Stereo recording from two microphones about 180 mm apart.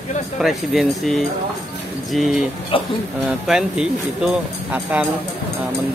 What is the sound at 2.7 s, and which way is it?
Speech, 30° left (ahead or behind).